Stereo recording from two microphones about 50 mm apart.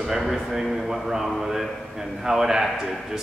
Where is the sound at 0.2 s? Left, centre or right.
Centre.